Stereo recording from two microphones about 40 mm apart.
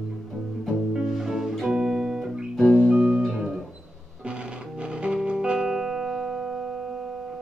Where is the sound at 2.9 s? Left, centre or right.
Centre.